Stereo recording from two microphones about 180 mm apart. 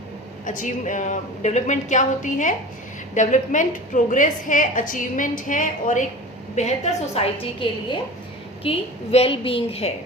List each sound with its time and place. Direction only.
0.4 s a woman's voice: 45° left (ahead or behind)